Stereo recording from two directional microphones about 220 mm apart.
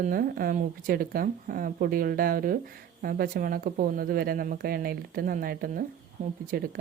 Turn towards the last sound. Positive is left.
turn(degrees=-40)  # may be behind; listen again after turning